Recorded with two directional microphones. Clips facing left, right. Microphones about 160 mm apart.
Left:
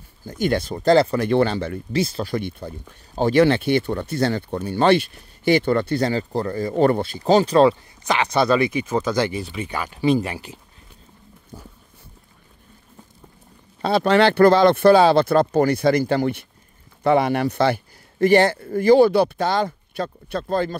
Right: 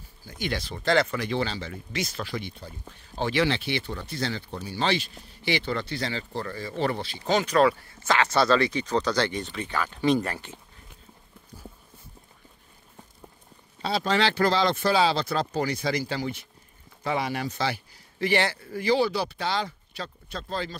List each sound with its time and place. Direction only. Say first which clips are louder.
0.2 s speech: left 10 dB; 50° left (ahead or behind)
1.2 s speech: left 10 dB; 55° left (ahead or behind)
1.9 s speech: left 9 dB; 30° left (ahead or behind)
2.2 s speech: left 8 dB; 50° left (ahead or behind)
7.2 s speech: left 7 dB; 30° left (ahead or behind)
7.9 s speech: left 3 dB; 15° left (ahead or behind)
13.8 s speech: left 8 dB; 60° left (ahead or behind)